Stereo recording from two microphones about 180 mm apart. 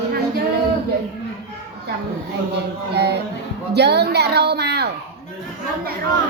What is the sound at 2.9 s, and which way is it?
Child singing, 65° right (ahead or behind).